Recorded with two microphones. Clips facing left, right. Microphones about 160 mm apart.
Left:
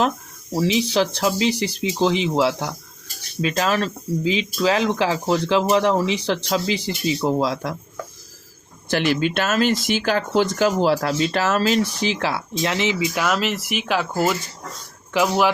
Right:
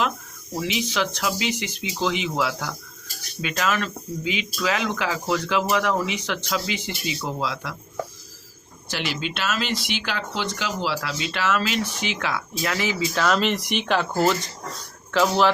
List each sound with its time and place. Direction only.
0.5 s speech: 30° left (ahead or behind)
8.9 s speech: 50° left (ahead or behind); by 13.1 s 20° left (ahead or behind)
13.1 s speech: 5° left (ahead or behind)
15.1 s speech: 10° left (ahead or behind)